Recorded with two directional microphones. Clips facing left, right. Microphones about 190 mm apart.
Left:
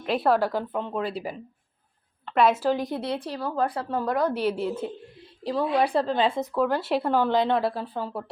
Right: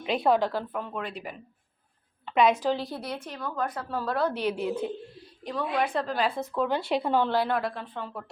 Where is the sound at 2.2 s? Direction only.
Centre (ahead or behind).